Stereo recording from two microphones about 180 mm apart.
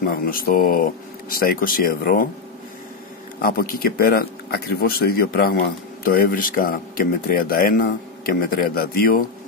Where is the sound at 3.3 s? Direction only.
55° left (ahead or behind).